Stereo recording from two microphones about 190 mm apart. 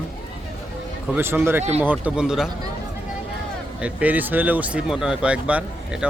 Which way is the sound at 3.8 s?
10° right (ahead or behind).